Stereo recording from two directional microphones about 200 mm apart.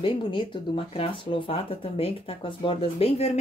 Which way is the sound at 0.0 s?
25° left (ahead or behind).